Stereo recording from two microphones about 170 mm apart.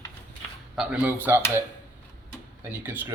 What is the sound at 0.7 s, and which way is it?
Speech, 5° right (ahead or behind).